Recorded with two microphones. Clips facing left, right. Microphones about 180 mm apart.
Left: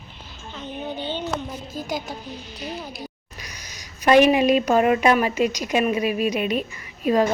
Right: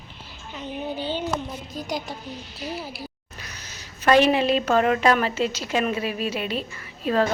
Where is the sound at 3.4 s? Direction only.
15° left (ahead or behind).